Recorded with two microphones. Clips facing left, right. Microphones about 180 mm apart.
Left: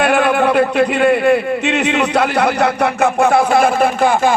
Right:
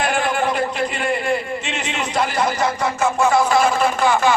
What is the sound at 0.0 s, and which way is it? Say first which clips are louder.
A man's voice: left 7 dB; 65° left (ahead or behind).